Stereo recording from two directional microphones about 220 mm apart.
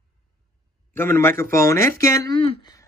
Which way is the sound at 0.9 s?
10° left (ahead or behind).